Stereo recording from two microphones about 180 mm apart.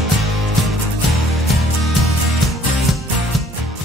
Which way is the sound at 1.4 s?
Centre (ahead or behind).